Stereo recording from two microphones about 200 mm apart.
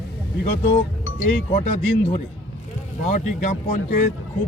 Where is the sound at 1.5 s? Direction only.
35° left (ahead or behind).